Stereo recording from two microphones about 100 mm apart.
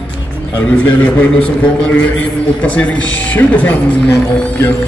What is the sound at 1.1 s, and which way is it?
Speech, 10° left (ahead or behind).